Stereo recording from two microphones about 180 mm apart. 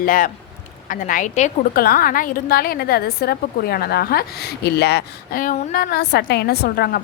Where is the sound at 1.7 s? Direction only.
55° left (ahead or behind).